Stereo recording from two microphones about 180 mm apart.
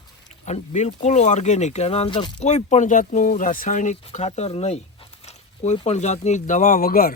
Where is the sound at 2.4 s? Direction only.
40° left (ahead or behind).